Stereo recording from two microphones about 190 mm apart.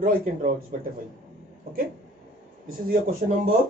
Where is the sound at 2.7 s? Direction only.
50° right (ahead or behind).